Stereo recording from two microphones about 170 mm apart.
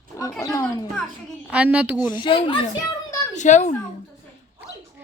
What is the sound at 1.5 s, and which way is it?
Speech, 10° right (ahead or behind).